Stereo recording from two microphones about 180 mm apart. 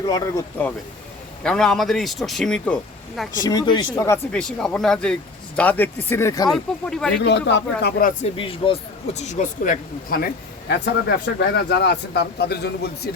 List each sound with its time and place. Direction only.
0.0 s speech: 20° left (ahead or behind)
1.5 s speech: 5° left (ahead or behind)
3.4 s speech: 25° left (ahead or behind)
4.3 s speech: 5° left (ahead or behind)
6.5 s speech: 5° left (ahead or behind)
7.2 s speech: 75° left (ahead or behind)
8.2 s speech: 30° left (ahead or behind); by 10.2 s 50° left (ahead or behind)
10.7 s speech: 70° left (ahead or behind)